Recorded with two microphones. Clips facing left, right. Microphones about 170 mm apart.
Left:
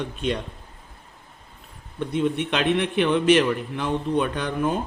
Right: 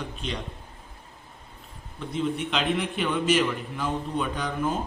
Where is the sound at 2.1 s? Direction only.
65° left (ahead or behind).